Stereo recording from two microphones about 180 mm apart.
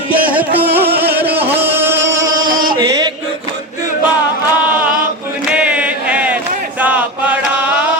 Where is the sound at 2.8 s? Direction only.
20° right (ahead or behind).